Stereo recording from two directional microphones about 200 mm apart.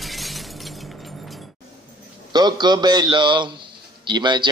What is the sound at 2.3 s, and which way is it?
A man's voice, 20° right (ahead or behind).